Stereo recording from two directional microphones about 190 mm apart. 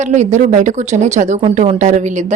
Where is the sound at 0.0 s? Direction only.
40° right (ahead or behind).